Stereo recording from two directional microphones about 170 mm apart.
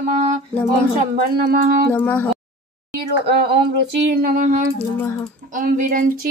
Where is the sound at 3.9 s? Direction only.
80° right; by 4.6 s 50° right (ahead or behind).